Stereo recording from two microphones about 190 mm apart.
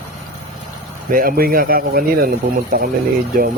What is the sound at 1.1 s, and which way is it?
Speech, 50° right (ahead or behind).